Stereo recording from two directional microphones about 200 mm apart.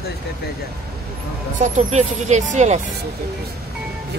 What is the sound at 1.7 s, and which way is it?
Speech, 35° right (ahead or behind).